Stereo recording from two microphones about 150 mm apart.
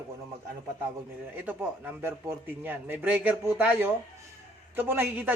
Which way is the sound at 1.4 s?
15° right (ahead or behind).